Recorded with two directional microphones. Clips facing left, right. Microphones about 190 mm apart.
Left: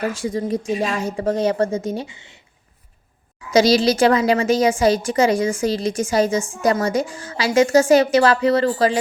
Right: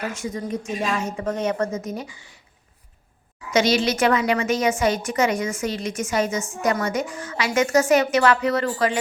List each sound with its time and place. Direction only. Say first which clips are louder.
0.1 s a woman's voice: left 5 dB; 30° left (ahead or behind)
3.5 s a woman's voice: left 5 dB; 35° left (ahead or behind)